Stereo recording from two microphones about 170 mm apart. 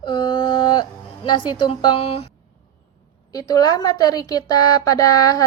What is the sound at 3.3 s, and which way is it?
A woman's voice, 20° left (ahead or behind).